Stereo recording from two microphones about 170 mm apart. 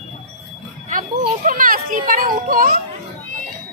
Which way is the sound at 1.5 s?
55° right (ahead or behind).